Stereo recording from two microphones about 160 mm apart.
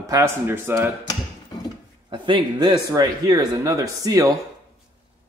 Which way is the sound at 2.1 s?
30° right (ahead or behind).